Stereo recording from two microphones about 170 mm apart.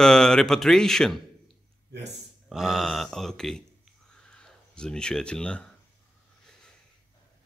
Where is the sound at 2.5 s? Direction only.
Centre (ahead or behind).